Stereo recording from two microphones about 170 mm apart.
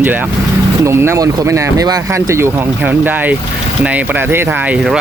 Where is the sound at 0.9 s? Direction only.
15° right (ahead or behind).